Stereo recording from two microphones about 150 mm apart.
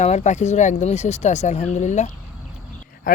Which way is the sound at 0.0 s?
45° left (ahead or behind).